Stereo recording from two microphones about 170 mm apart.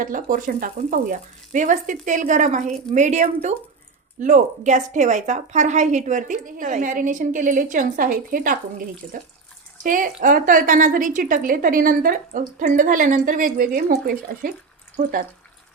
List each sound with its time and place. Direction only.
0.0 s speech: 50° right (ahead or behind)
9.8 s speech: 50° right (ahead or behind)